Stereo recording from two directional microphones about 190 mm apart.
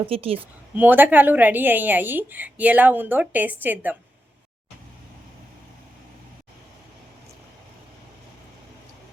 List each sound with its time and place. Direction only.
0.0 s a woman's voice: 30° right (ahead or behind)
0.8 s a woman's voice: 10° right (ahead or behind)